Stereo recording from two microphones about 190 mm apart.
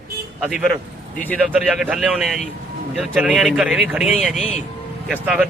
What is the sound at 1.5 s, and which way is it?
A man's voice, 5° right (ahead or behind).